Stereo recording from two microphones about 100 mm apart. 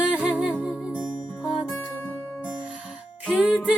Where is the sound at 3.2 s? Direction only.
10° right (ahead or behind).